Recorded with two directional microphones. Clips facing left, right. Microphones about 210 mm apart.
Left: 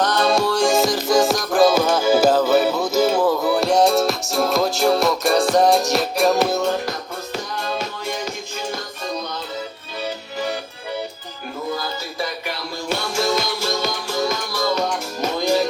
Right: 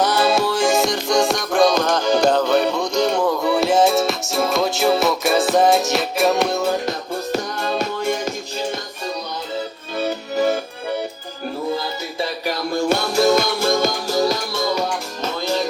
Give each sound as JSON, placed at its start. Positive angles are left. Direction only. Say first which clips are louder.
{"t": 0.0, "sound": "music", "louder": "right 1 dB", "side_deg": -5}
{"t": 7.5, "sound": "music", "louder": "right 4 dB", "side_deg": -45}
{"t": 10.0, "sound": "music", "louder": "right 7 dB", "side_deg": -45}
{"t": 12.5, "sound": "music", "louder": "right 7 dB", "side_deg": -50}
{"t": 13.4, "sound": "music", "louder": "right 5 dB", "side_deg": -50}
{"t": 15.2, "sound": "music", "louder": "left 4 dB", "side_deg": 15}